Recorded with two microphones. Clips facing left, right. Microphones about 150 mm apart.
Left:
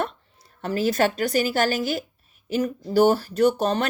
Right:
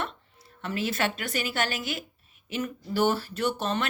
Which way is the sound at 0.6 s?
40° left (ahead or behind).